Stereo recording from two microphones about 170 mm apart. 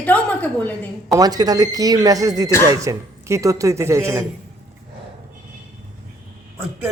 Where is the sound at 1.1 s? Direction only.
20° right (ahead or behind).